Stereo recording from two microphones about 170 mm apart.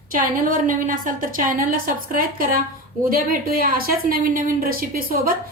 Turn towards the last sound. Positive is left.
turn(degrees=-60)  # may be behind; listen again after turning